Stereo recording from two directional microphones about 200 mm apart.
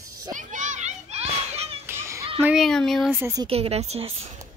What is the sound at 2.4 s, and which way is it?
Speech, centre (ahead or behind).